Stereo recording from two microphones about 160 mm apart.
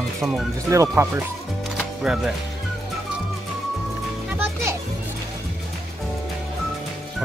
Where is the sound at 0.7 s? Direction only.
20° right (ahead or behind).